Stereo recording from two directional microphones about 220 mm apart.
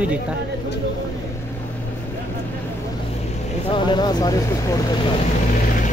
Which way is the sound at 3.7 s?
20° left (ahead or behind).